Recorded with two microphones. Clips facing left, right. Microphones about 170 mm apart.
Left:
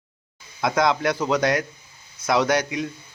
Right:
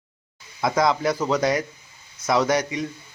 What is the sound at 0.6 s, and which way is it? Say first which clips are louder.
A man's voice: even; centre (ahead or behind).